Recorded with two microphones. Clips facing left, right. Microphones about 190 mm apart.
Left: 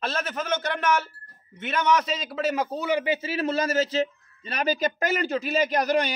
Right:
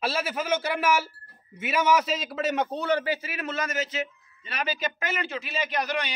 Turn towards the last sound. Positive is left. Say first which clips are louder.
# left 6 dB
turn(degrees=45)  # may be behind; listen again after turning